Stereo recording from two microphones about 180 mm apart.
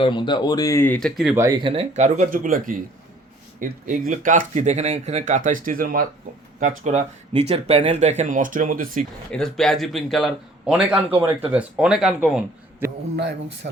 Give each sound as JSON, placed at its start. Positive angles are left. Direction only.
{"t": 0.0, "sound": "speech", "side_deg": 25}
{"t": 1.4, "sound": "speech", "side_deg": -15}
{"t": 1.6, "sound": "speech", "side_deg": -35}
{"t": 9.3, "sound": "a man's voice", "side_deg": 0}